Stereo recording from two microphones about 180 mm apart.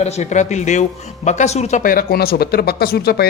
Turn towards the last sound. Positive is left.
turn(degrees=60)  # may be behind; listen again after turning